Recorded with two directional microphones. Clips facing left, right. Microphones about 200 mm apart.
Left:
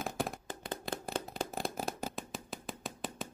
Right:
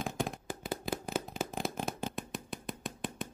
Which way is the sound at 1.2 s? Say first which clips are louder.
Right 1 dB; centre (ahead or behind).